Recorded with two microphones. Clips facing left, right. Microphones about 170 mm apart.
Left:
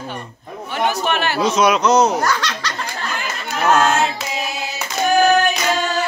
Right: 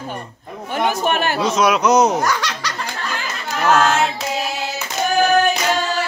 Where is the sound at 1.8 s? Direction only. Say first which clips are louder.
Even; 15° right (ahead or behind).